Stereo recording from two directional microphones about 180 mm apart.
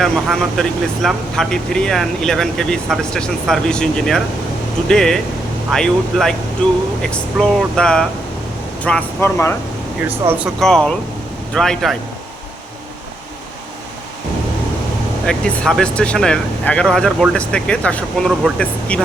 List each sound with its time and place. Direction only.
0.0 s speech: centre (ahead or behind)
10.1 s speech: 10° right (ahead or behind)
10.6 s speech: 5° left (ahead or behind)
15.3 s speech: 5° left (ahead or behind)